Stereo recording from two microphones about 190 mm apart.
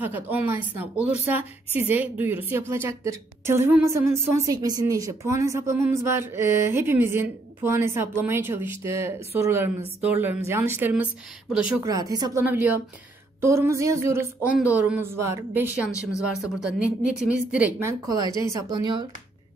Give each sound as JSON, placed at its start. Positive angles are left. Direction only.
{"t": 0.0, "sound": "a woman's voice", "side_deg": -10}
{"t": 12.4, "sound": "a woman's voice", "side_deg": -10}